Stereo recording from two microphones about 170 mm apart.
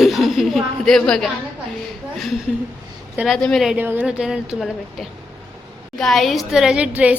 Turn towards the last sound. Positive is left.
turn(degrees=-5)  # may be behind; listen again after turning